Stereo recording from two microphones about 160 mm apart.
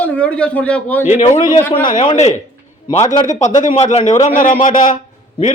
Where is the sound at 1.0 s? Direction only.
45° left (ahead or behind).